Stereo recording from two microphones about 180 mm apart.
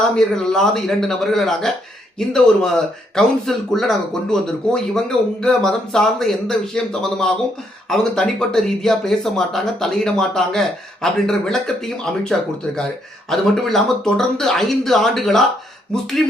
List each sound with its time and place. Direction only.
0.2 s speech: centre (ahead or behind)
13.3 s speech: centre (ahead or behind)